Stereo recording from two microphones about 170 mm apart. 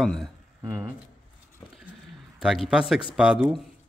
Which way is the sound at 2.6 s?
5° right (ahead or behind).